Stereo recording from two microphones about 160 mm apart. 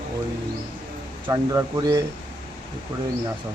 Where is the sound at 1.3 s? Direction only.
20° right (ahead or behind).